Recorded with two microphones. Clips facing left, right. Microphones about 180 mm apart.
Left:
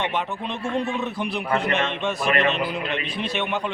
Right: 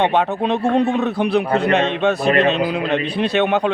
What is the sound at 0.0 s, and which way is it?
Speech, 65° right (ahead or behind).